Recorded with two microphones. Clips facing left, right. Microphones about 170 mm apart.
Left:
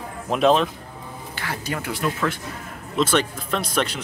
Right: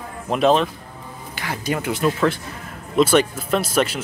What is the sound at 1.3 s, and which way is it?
Speech, 20° right (ahead or behind).